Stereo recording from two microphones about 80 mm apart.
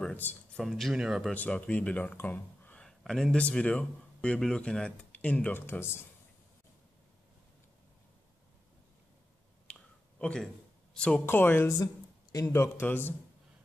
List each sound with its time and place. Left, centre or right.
0.1 s speech: left
0.6 s speech: centre
1.3 s speech: centre
2.8 s speech: centre; by 5.9 s left
9.7 s finger snapping: centre
10.4 s a sound: centre
11.2 s speech: left
11.8 s a sound: left
12.6 s speech: left